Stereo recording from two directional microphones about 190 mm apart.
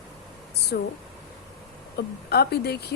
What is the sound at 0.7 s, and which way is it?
Speech, 55° left (ahead or behind).